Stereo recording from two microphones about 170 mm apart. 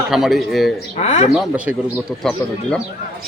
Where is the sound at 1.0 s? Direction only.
40° left (ahead or behind).